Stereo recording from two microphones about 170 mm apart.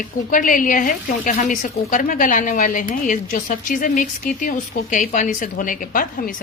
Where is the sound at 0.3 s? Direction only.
50° left (ahead or behind).